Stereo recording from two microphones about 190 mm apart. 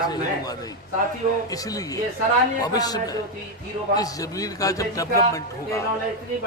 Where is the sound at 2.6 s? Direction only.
20° left (ahead or behind).